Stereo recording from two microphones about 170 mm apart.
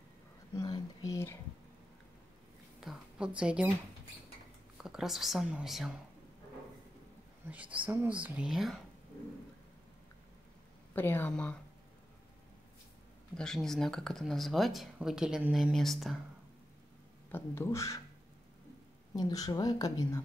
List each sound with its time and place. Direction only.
0.6 s a sound: 25° left (ahead or behind)
2.8 s a sound: 5° right (ahead or behind)
4.7 s speech: centre (ahead or behind)
7.4 s speech: 10° right (ahead or behind)
11.0 s speech: 10° left (ahead or behind)
13.4 s speech: 5° left (ahead or behind)
17.3 s speech: 15° left (ahead or behind)
19.1 s a woman's voice: 20° left (ahead or behind)